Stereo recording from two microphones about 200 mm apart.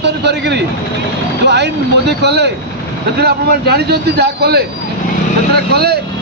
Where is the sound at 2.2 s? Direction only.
55° right (ahead or behind).